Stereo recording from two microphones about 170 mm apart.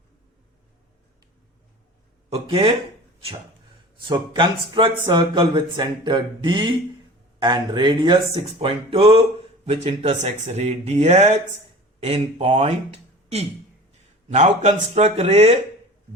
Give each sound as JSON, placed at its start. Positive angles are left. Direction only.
{"t": 2.3, "sound": "speech", "side_deg": -30}
{"t": 4.1, "sound": "speech", "side_deg": -25}